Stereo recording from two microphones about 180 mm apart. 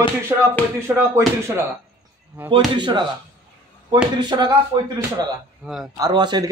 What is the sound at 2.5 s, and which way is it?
Speech, 25° right (ahead or behind).